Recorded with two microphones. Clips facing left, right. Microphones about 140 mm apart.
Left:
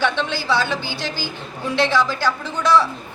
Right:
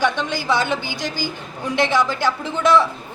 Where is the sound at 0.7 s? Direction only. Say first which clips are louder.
Right 1 dB; 50° right (ahead or behind).